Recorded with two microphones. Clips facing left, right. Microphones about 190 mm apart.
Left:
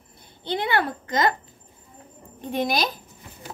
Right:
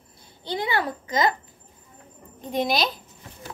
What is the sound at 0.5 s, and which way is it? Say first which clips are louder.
Speech: left 2 dB; 60° left (ahead or behind).